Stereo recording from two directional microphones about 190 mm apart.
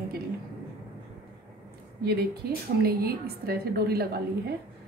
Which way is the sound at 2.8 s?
55° right (ahead or behind).